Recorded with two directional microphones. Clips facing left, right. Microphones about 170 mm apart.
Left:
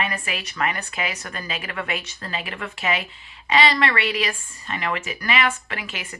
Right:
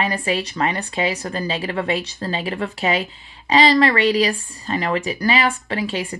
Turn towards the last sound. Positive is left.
turn(degrees=-30)  # may be behind; listen again after turning